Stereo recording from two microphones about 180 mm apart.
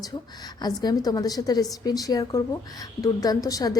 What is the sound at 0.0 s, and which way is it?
A woman's voice, 20° left (ahead or behind).